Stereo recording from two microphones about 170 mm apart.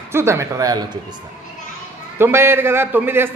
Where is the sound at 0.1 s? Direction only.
15° right (ahead or behind).